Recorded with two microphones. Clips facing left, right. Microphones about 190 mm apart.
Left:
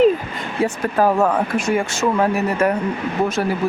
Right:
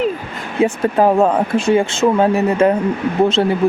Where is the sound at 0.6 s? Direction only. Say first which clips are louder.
Right 4 dB; 20° right (ahead or behind).